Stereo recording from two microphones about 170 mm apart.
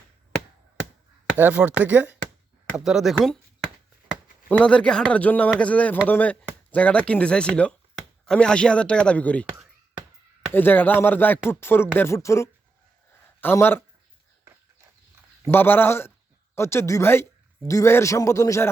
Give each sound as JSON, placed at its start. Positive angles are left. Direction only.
{"t": 1.4, "sound": "speech", "side_deg": -10}
{"t": 10.5, "sound": "speech", "side_deg": 10}
{"t": 14.4, "sound": "horse", "side_deg": -15}
{"t": 15.4, "sound": "speech", "side_deg": 10}